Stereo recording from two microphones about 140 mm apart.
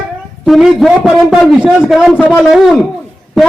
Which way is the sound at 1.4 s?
5° left (ahead or behind).